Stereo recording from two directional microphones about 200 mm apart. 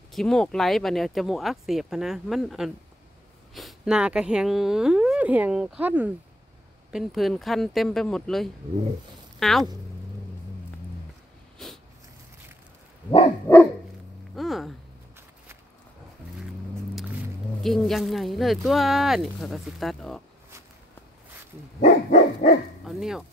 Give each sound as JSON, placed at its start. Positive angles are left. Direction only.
{"t": 0.1, "sound": "speech", "side_deg": 0}
{"t": 11.5, "sound": "snort", "side_deg": 0}
{"t": 13.5, "sound": "dog", "side_deg": 10}
{"t": 14.3, "sound": "a sound", "side_deg": 0}
{"t": 17.6, "sound": "speech", "side_deg": 0}
{"t": 21.8, "sound": "dog", "side_deg": 35}
{"t": 22.8, "sound": "speech", "side_deg": 0}